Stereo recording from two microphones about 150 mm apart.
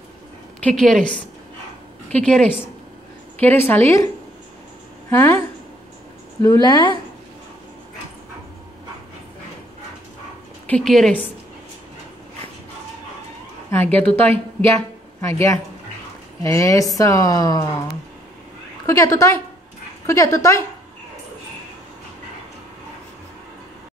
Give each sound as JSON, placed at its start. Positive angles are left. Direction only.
{"t": 0.6, "sound": "a woman's voice", "side_deg": 5}
{"t": 5.1, "sound": "a woman's voice", "side_deg": 15}
{"t": 6.4, "sound": "speech", "side_deg": 25}
{"t": 10.7, "sound": "a woman's voice", "side_deg": 0}
{"t": 13.7, "sound": "a woman's voice", "side_deg": 15}
{"t": 18.9, "sound": "speech", "side_deg": 20}